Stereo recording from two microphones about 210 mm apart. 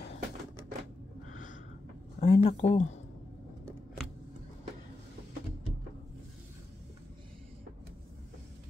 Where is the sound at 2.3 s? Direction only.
30° left (ahead or behind).